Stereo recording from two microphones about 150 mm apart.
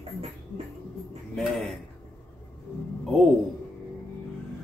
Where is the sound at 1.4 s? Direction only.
Centre (ahead or behind).